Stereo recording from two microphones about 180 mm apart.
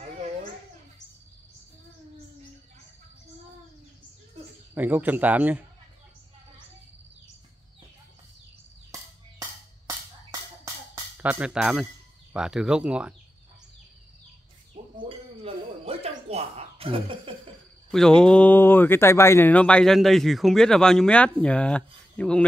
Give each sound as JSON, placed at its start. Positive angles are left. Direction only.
{"t": 4.7, "sound": "a man's voice", "side_deg": -10}
{"t": 11.1, "sound": "speech", "side_deg": -10}
{"t": 15.0, "sound": "a sound", "side_deg": -30}
{"t": 17.9, "sound": "speech", "side_deg": 5}